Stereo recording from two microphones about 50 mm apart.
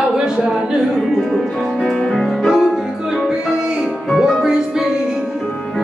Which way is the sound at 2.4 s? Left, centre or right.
Centre.